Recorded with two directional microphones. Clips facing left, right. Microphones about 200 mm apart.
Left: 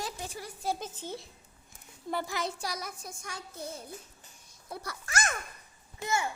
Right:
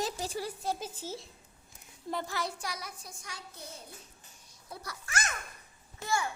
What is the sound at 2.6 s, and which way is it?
Speech, 45° left (ahead or behind).